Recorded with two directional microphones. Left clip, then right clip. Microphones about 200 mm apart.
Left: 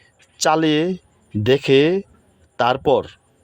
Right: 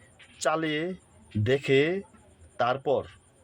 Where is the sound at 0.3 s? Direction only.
40° left (ahead or behind).